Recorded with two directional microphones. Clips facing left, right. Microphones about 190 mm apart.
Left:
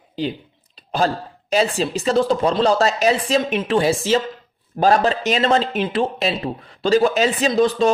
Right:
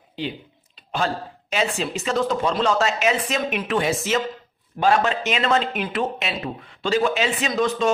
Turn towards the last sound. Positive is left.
turn(degrees=35)  # may be behind; listen again after turning